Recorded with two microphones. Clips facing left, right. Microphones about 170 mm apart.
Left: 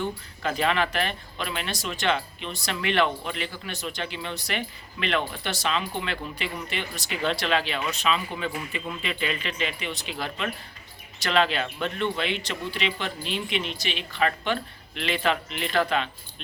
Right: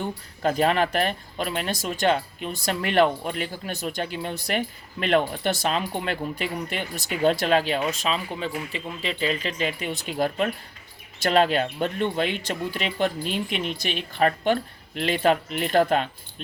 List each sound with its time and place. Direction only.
0.0 s speech: 45° right (ahead or behind)